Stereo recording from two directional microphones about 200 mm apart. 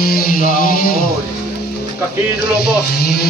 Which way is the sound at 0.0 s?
45° left (ahead or behind).